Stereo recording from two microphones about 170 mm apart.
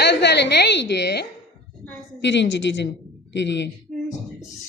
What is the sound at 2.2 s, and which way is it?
A woman's voice, 90° left.